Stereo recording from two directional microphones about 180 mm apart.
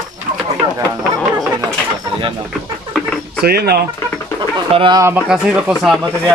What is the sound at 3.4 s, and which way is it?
Speech, 60° right (ahead or behind).